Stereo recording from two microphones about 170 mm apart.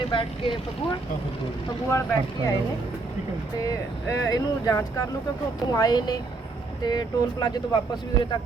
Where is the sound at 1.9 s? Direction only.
15° left (ahead or behind).